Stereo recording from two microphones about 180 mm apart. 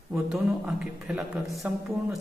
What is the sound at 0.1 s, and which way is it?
A man's voice, 5° right (ahead or behind).